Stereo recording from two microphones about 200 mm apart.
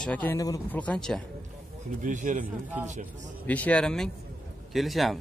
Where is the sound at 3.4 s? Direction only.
5° left (ahead or behind).